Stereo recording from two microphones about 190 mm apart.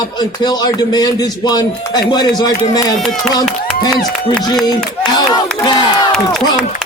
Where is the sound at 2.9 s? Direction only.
Centre (ahead or behind).